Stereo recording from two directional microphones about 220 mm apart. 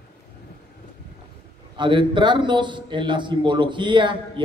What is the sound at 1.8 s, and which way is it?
A woman's voice, 20° right (ahead or behind).